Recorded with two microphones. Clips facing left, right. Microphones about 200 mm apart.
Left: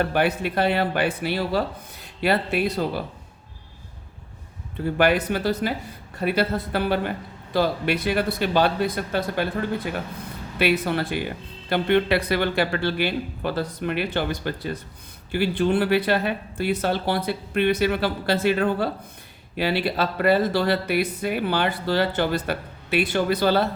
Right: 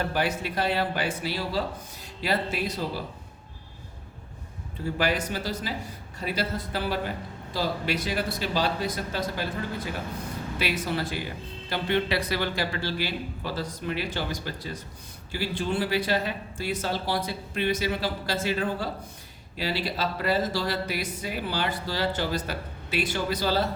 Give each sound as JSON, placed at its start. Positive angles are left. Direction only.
{"t": 0.0, "sound": "speech", "side_deg": 60}
{"t": 4.9, "sound": "speech", "side_deg": 60}